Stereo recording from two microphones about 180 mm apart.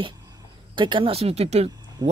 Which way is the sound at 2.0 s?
20° right (ahead or behind).